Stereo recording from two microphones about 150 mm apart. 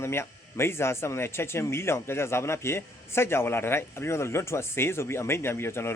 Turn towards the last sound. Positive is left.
turn(degrees=15)  # may be behind; listen again after turning